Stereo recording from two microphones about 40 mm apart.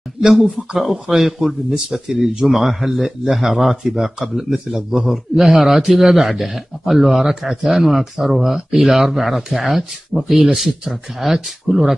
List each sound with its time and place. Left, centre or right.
0.3 s speech: centre